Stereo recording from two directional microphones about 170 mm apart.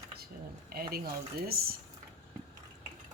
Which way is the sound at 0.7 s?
60° right (ahead or behind).